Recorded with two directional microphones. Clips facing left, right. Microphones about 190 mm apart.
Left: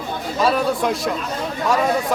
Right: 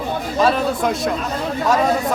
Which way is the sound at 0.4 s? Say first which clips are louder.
Even; centre (ahead or behind).